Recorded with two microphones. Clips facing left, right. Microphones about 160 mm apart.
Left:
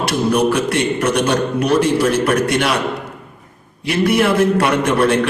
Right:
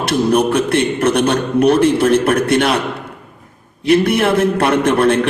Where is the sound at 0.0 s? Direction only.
55° right (ahead or behind).